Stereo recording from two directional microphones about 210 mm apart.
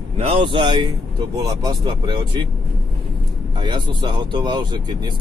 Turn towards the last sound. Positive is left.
turn(degrees=-20)  # may be behind; listen again after turning